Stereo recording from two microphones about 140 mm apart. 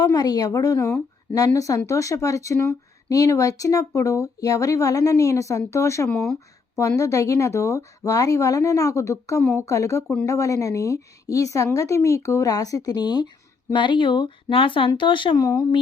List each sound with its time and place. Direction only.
0.0 s a woman's voice: 30° left (ahead or behind)
6.1 s speech: 5° left (ahead or behind)
6.7 s a woman's voice: 25° left (ahead or behind)